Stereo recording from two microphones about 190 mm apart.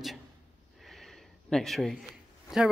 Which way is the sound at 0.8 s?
Centre (ahead or behind).